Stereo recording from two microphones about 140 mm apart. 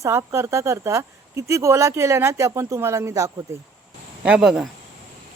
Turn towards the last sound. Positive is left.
turn(degrees=-5)  # may be behind; listen again after turning